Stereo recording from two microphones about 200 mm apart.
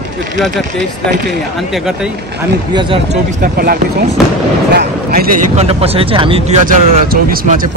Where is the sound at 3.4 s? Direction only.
50° right (ahead or behind).